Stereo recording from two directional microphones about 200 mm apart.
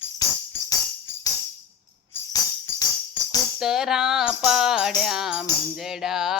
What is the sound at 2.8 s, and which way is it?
Music, 20° left (ahead or behind).